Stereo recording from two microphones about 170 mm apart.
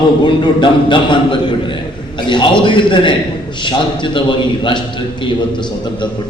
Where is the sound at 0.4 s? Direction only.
30° left (ahead or behind).